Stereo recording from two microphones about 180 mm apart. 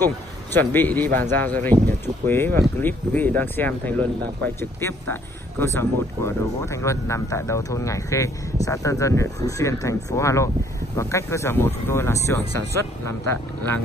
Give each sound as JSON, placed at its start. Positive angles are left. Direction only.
{"t": 0.0, "sound": "speech", "side_deg": 10}